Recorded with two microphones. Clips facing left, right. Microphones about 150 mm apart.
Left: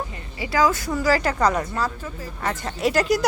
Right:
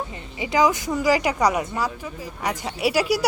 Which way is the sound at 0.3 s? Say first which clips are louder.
Right 1 dB; 20° right (ahead or behind).